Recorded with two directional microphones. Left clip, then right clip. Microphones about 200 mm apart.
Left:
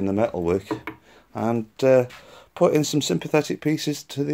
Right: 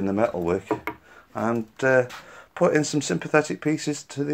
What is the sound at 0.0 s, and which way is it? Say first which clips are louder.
Speech: left 1 dB; 30° left (ahead or behind).